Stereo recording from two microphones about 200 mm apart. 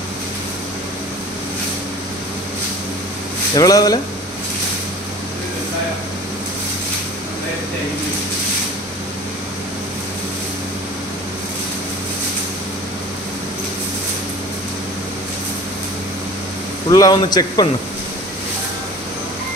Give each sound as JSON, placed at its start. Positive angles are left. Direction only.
{"t": 3.5, "sound": "speech", "side_deg": 20}
{"t": 16.9, "sound": "a man's voice", "side_deg": 20}